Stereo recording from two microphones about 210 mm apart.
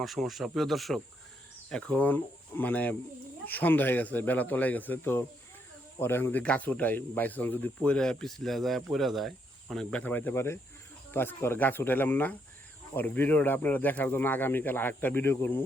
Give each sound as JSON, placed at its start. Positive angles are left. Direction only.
{"t": 0.0, "sound": "speech", "side_deg": 0}